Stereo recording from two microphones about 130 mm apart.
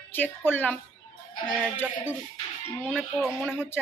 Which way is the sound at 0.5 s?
15° left (ahead or behind).